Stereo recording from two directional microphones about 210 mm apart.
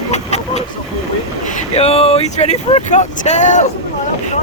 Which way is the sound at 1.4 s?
35° left (ahead or behind).